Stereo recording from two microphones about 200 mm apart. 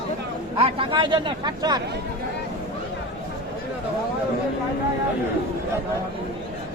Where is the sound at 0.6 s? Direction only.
25° right (ahead or behind).